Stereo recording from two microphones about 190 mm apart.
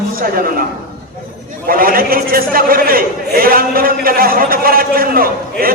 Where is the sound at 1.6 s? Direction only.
50° right (ahead or behind).